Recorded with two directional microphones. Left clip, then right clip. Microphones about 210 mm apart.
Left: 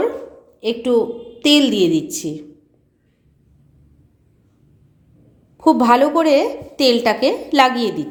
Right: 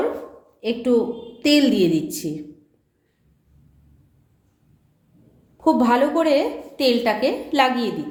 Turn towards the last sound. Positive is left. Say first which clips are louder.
# left 5 dB
turn(degrees=35)  # may be behind; listen again after turning